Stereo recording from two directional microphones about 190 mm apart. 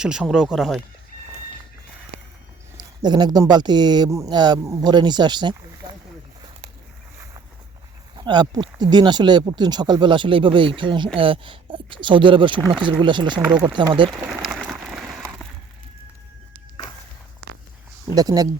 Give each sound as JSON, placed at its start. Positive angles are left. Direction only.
{"t": 0.0, "sound": "speech", "side_deg": -5}
{"t": 3.0, "sound": "speech", "side_deg": -20}
{"t": 8.2, "sound": "speech", "side_deg": -25}
{"t": 14.2, "sound": "a sound", "side_deg": 0}
{"t": 18.1, "sound": "speech", "side_deg": -20}